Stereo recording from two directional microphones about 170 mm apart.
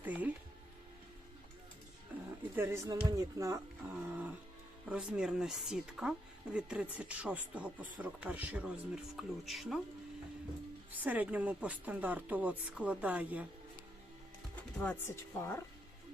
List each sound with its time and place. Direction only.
0.0 s music: 10° right (ahead or behind)
2.1 s music: 10° right (ahead or behind)
2.6 s speech: 15° right (ahead or behind); by 9.8 s centre (ahead or behind)
10.9 s speech: 10° right (ahead or behind)
14.8 s a woman's voice: 10° left (ahead or behind)